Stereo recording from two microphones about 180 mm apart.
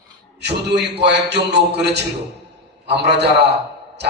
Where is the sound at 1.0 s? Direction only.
70° right (ahead or behind).